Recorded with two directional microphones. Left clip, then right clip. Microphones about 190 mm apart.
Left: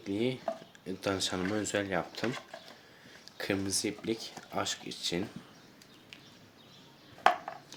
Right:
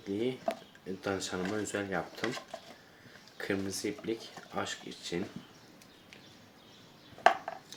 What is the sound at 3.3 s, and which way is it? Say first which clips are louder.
Speech: left 2 dB; 45° left (ahead or behind).